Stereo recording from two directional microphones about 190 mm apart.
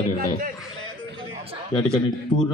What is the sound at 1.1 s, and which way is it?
Chatter, 30° right (ahead or behind).